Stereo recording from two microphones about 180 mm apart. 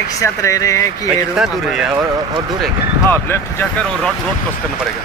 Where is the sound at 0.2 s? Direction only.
20° left (ahead or behind).